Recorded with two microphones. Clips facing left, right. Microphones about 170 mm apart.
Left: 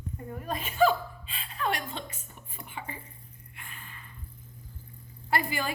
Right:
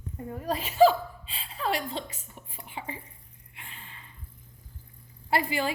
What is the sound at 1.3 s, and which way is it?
Chuckle, 30° right (ahead or behind).